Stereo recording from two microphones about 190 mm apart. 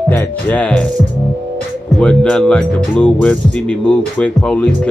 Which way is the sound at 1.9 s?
5° left (ahead or behind).